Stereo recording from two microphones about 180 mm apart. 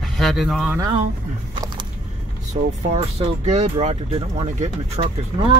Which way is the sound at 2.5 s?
35° right (ahead or behind).